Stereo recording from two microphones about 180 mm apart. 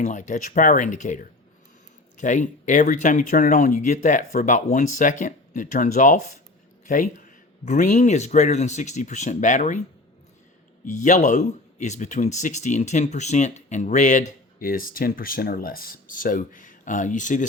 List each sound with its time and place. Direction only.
0.0 s speech: 45° left (ahead or behind)
10.8 s speech: 45° left (ahead or behind)